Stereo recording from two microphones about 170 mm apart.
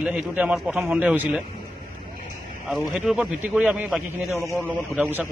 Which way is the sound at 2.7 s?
5° right (ahead or behind).